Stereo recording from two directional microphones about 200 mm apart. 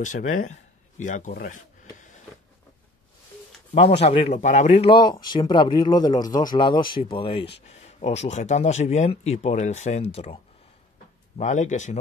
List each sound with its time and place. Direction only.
0.0 s speech: 40° left (ahead or behind)
3.7 s speech: 30° left (ahead or behind)